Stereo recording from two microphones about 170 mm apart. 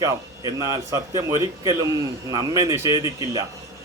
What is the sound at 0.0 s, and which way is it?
Speech, 20° right (ahead or behind).